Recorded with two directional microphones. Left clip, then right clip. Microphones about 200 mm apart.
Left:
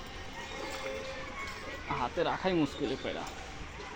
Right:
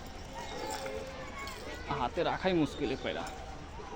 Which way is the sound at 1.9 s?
10° left (ahead or behind).